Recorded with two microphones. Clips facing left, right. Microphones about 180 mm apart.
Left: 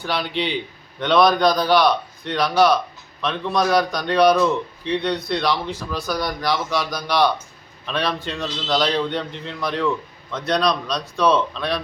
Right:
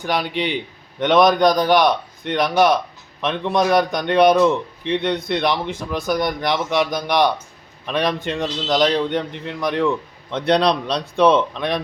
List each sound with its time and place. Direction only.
0.0 s a man's voice: 15° right (ahead or behind)
10.3 s a man's voice: 30° right (ahead or behind)